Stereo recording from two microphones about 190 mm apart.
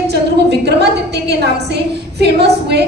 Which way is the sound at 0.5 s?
60° right (ahead or behind).